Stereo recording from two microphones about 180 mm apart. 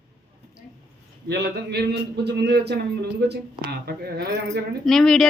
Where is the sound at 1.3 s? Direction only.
65° right (ahead or behind).